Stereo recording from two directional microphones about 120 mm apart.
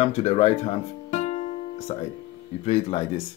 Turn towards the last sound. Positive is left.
turn(degrees=60)  # may be behind; listen again after turning